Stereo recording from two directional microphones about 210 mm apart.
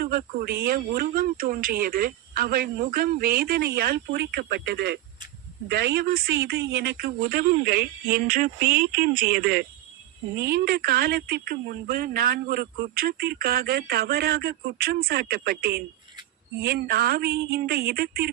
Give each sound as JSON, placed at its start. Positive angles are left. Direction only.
{"t": 0.0, "sound": "speech", "side_deg": -45}